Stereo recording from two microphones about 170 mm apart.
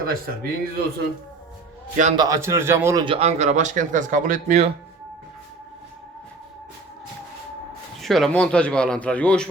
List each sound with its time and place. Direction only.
0.0 s speech: 60° right (ahead or behind)
2.1 s a man's voice: 20° right (ahead or behind)
3.0 s speech: 35° right (ahead or behind)
8.0 s a man's voice: centre (ahead or behind)